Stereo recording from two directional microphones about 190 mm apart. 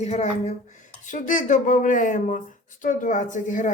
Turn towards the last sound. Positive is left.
turn(degrees=40)  # may be behind; listen again after turning